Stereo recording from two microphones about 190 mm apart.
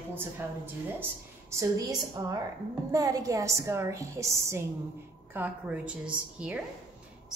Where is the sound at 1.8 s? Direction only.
20° right (ahead or behind).